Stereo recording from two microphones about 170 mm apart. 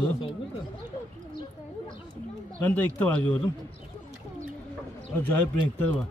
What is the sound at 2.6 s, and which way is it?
Speech, 10° left (ahead or behind).